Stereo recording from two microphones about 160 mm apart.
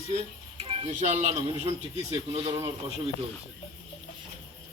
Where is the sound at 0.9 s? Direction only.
50° right (ahead or behind).